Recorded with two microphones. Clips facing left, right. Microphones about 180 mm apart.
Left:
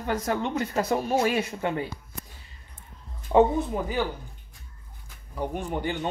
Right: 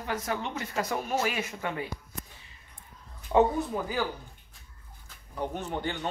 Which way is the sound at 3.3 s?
20° left (ahead or behind).